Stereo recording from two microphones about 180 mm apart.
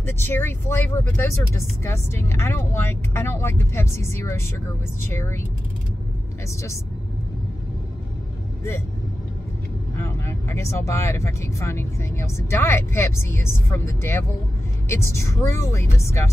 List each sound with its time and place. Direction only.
0.0 s speech: 10° left (ahead or behind)
9.9 s speech: 15° left (ahead or behind)